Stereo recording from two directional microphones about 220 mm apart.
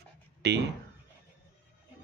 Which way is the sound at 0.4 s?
50° right (ahead or behind).